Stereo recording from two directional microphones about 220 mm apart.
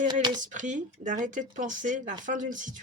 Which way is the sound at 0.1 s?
20° right (ahead or behind).